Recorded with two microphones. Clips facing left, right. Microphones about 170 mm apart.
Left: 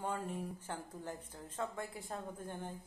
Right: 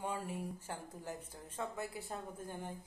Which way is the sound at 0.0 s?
10° right (ahead or behind).